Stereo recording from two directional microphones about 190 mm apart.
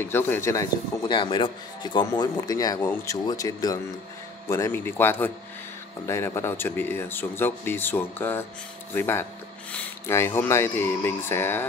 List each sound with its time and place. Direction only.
0.0 s speech: 10° left (ahead or behind)
2.8 s speech: 10° left (ahead or behind)